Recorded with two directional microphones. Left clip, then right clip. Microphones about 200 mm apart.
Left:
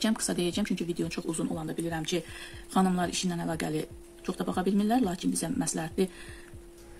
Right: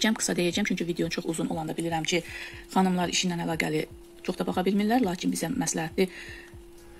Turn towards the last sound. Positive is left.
turn(degrees=0)  # may be behind; listen again after turning